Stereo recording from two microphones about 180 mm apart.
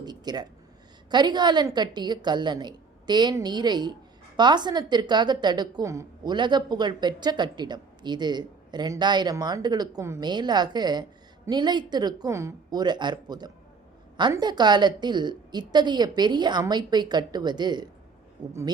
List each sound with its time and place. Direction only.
0.0 s a woman's voice: 25° right (ahead or behind)